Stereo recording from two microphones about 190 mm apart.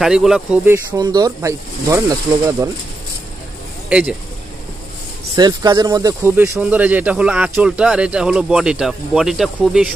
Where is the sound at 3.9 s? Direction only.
5° right (ahead or behind).